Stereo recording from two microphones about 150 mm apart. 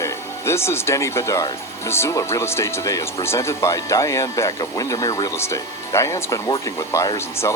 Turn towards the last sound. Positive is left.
turn(degrees=20)  # may be behind; listen again after turning